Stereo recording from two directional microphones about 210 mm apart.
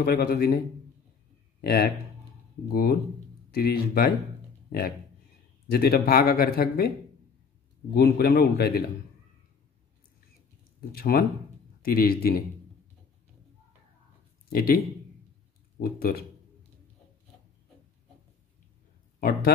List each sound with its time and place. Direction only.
0.0 s speech: 50° left (ahead or behind)
1.6 s speech: 45° left (ahead or behind)
5.7 s speech: 45° left (ahead or behind)
7.9 s speech: 45° left (ahead or behind)
10.8 s speech: 45° left (ahead or behind)
14.5 s speech: 45° left (ahead or behind)
15.8 s speech: 45° left (ahead or behind)
19.1 s speech: 45° left (ahead or behind)